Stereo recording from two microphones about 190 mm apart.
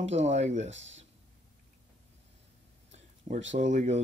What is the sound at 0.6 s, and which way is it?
Speech, 75° right (ahead or behind).